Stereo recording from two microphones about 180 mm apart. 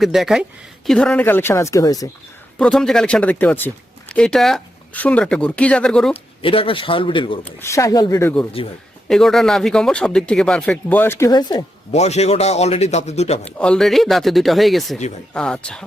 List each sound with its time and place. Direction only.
0.0 s a woman's voice: centre (ahead or behind); by 2.0 s 20° left (ahead or behind)
2.6 s speech: 5° left (ahead or behind)
6.4 s a man's voice: 30° left (ahead or behind)
7.6 s a woman's voice: 15° left (ahead or behind)
9.0 s speech: centre (ahead or behind); by 11.6 s 20° left (ahead or behind)
11.9 s a man's voice: 40° left (ahead or behind)
13.4 s speech: 5° left (ahead or behind)